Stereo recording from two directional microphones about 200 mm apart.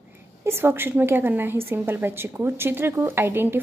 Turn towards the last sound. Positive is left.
turn(degrees=-10)  # may be behind; listen again after turning